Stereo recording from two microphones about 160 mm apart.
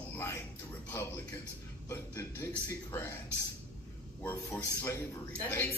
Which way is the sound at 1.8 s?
15° left (ahead or behind).